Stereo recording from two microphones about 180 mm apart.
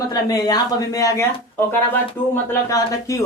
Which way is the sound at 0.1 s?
20° left (ahead or behind).